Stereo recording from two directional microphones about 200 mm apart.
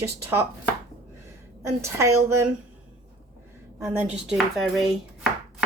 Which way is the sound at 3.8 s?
5° right (ahead or behind).